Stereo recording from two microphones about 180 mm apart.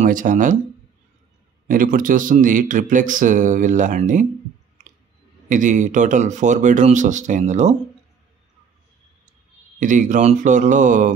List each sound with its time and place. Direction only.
0.0 s speech: 45° right (ahead or behind)
1.7 s speech: 50° right (ahead or behind)
4.8 s a sound: 45° right (ahead or behind)
5.5 s speech: 45° right (ahead or behind)
9.8 s speech: 45° right (ahead or behind)